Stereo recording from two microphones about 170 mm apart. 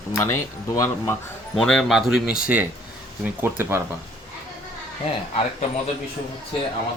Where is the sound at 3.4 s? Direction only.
15° right (ahead or behind).